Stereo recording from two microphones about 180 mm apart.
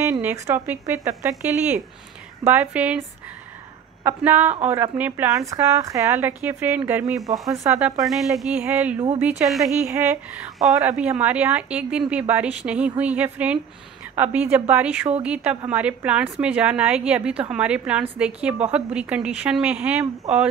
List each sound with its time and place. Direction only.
0.1 s a woman's voice: 10° right (ahead or behind)
4.0 s a woman's voice: 10° right (ahead or behind)
8.0 s a woman's voice: centre (ahead or behind)